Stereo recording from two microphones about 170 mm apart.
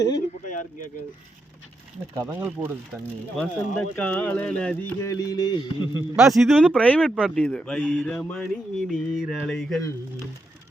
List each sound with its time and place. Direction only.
2.1 s speech: 15° right (ahead or behind)
3.3 s speech: 5° left (ahead or behind)
5.1 s a man's voice: 20° left (ahead or behind)
6.1 s a man's voice: centre (ahead or behind)